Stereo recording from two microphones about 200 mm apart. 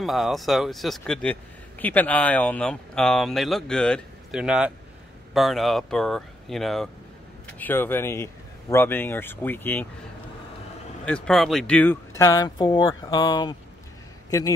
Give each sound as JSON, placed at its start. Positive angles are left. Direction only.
{"t": 0.0, "sound": "speech", "side_deg": 0}
{"t": 11.1, "sound": "speech", "side_deg": 5}